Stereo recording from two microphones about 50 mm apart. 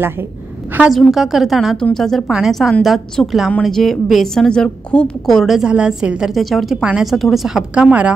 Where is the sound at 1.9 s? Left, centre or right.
Centre.